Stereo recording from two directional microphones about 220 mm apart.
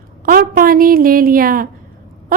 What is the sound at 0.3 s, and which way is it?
A woman's voice, 40° right (ahead or behind).